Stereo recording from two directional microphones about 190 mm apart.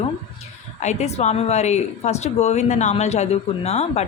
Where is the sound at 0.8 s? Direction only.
35° left (ahead or behind).